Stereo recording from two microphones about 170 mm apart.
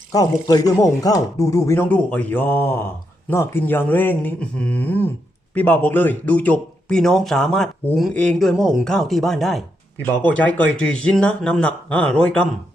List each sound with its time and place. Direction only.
0.1 s speech: 20° left (ahead or behind); by 12.5 s 5° left (ahead or behind)